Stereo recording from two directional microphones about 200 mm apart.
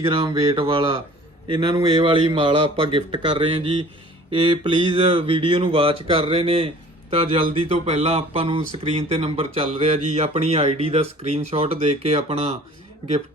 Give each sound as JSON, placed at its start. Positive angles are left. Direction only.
{"t": 0.0, "sound": "a man's voice", "side_deg": -25}